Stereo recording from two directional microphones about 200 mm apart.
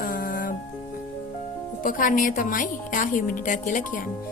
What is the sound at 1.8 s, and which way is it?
Speech, 40° left (ahead or behind).